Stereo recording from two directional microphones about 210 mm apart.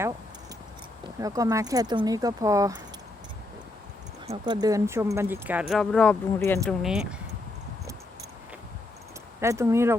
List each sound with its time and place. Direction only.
1.2 s speech: 15° right (ahead or behind)
4.3 s speech: 20° right (ahead or behind); by 7.0 s centre (ahead or behind)
9.4 s speech: 15° right (ahead or behind)